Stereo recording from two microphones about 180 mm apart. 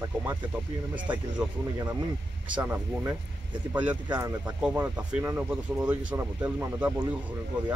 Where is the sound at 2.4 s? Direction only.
10° right (ahead or behind).